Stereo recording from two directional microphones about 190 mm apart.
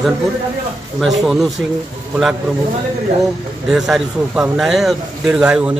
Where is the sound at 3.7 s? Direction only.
5° right (ahead or behind).